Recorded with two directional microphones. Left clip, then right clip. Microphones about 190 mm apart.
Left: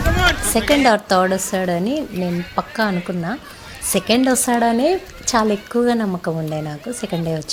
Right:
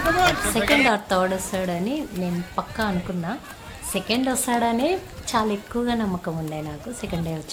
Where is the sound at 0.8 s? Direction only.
30° left (ahead or behind).